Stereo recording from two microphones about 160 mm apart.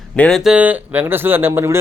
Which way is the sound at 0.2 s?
Centre (ahead or behind).